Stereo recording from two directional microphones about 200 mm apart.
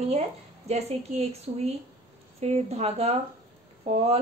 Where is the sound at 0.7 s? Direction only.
30° right (ahead or behind).